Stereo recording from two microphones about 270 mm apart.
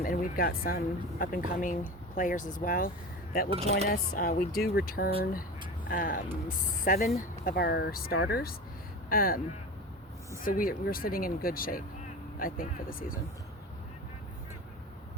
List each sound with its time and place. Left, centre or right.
0.0 s speech: left
3.5 s speech: right
3.8 s speech: left
10.4 s speech: left